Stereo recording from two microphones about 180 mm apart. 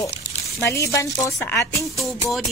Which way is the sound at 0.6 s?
15° left (ahead or behind).